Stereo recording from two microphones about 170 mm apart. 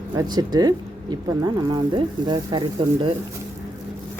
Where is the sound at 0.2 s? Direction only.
25° right (ahead or behind).